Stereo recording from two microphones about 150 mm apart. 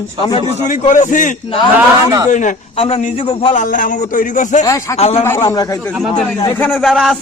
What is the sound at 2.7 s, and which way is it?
Speech, 45° left (ahead or behind).